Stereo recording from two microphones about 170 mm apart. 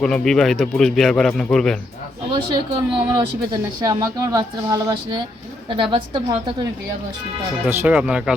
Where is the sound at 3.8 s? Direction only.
20° right (ahead or behind).